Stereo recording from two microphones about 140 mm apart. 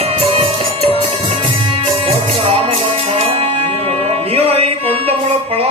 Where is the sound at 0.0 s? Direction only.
45° right (ahead or behind).